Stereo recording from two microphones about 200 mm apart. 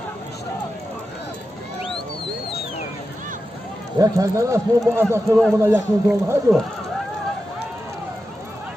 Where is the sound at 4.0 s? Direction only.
15° right (ahead or behind).